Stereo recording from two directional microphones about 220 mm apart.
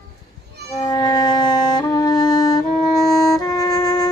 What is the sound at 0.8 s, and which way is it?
Music, 20° left (ahead or behind).